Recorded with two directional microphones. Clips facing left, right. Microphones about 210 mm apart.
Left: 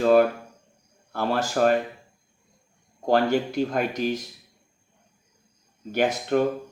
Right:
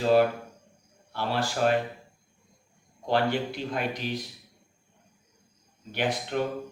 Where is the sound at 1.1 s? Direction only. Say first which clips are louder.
Left 5 dB; 50° left (ahead or behind).